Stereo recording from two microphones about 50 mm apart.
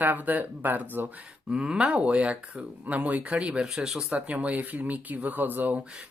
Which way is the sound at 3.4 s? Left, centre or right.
Centre.